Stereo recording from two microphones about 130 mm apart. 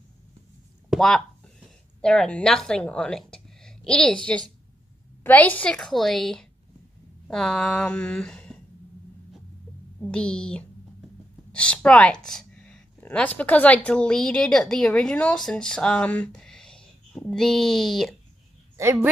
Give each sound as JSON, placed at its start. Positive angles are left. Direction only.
{"t": 0.8, "sound": "speech", "side_deg": 0}
{"t": 9.9, "sound": "a woman's voice", "side_deg": 5}
{"t": 12.3, "sound": "a sound", "side_deg": 5}
{"t": 13.4, "sound": "speech", "side_deg": 10}
{"t": 18.8, "sound": "speech", "side_deg": -20}